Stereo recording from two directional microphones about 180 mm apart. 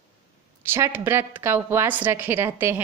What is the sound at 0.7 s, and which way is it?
A woman's voice, 10° right (ahead or behind).